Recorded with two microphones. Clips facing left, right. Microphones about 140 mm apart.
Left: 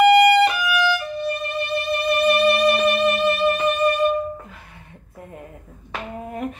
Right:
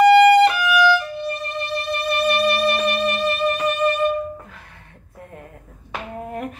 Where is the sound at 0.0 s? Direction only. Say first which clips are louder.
Right 2 dB; 40° right (ahead or behind).